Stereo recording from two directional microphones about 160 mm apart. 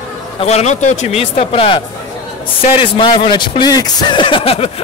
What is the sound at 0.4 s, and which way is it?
A man's voice, 40° left (ahead or behind).